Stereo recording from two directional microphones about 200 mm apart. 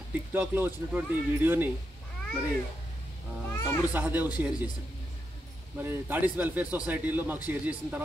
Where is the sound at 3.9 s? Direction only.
10° right (ahead or behind).